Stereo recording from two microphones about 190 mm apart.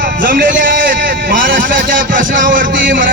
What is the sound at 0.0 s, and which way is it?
A man's voice, 45° right (ahead or behind).